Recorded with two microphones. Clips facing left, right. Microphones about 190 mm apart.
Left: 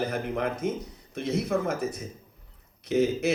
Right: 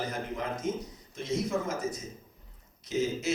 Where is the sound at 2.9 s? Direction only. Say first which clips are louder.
Left 6 dB; 60° left (ahead or behind).